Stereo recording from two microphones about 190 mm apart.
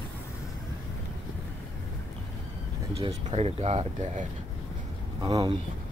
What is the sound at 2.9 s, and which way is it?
Speech, 35° right (ahead or behind).